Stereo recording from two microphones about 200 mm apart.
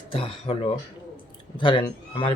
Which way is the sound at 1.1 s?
25° left (ahead or behind).